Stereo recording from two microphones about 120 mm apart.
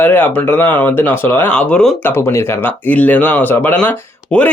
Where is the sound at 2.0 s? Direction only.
20° left (ahead or behind).